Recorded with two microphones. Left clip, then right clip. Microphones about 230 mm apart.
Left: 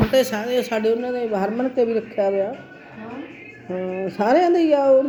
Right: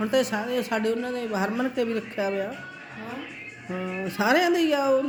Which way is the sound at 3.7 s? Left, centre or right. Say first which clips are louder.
Left 6 dB; right.